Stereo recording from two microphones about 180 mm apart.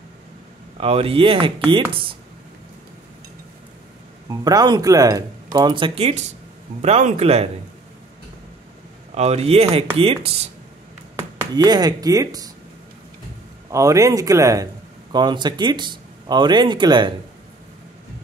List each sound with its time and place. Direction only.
0.7 s speech: 30° right (ahead or behind)
4.3 s speech: 20° right (ahead or behind)
9.1 s speech: 35° right (ahead or behind)
11.5 s speech: 25° right (ahead or behind)
13.7 s speech: 15° right (ahead or behind)